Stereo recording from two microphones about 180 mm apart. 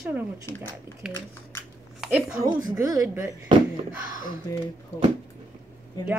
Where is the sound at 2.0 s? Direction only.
5° right (ahead or behind).